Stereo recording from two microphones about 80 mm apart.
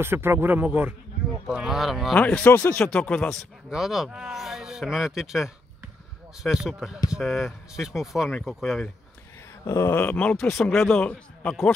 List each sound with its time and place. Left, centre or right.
0.0 s a man's voice: right
1.5 s speech: centre
2.1 s speech: centre
3.7 s speech: centre
9.7 s speech: left
10.3 s a man's voice: centre